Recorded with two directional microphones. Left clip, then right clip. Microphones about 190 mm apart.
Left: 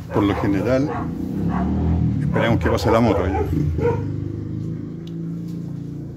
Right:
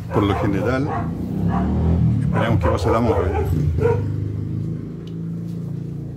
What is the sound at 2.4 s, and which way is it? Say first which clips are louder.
Speech: left 1 dB; 35° left (ahead or behind).